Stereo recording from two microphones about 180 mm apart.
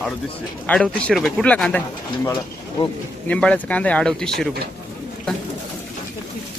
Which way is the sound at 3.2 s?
5° left (ahead or behind).